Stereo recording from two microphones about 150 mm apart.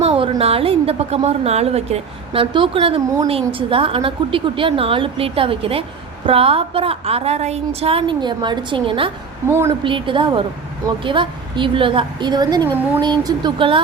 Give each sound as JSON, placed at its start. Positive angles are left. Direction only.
{"t": 0.0, "sound": "a woman's voice", "side_deg": -40}
{"t": 9.5, "sound": "a woman's voice", "side_deg": -15}
{"t": 9.8, "sound": "a woman's voice", "side_deg": -35}